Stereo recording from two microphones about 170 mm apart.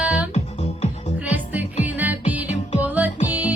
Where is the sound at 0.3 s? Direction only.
40° left (ahead or behind).